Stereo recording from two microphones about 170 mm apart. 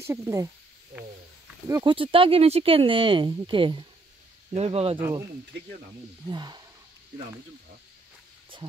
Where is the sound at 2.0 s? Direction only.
30° right (ahead or behind).